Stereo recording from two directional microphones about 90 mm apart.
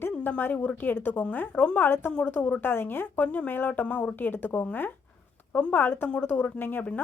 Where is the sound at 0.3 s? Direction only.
15° left (ahead or behind).